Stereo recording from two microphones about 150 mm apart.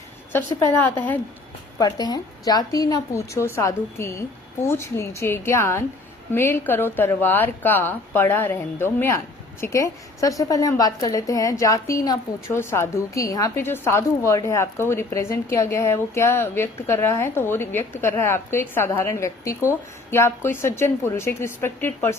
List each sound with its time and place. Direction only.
0.3 s a woman's voice: 15° left (ahead or behind)
1.8 s a woman's voice: 25° left (ahead or behind)